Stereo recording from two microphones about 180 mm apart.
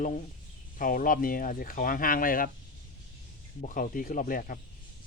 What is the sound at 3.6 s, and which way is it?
Speech, 45° left (ahead or behind).